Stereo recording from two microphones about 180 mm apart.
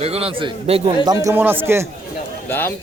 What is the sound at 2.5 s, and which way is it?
Speech, 10° left (ahead or behind).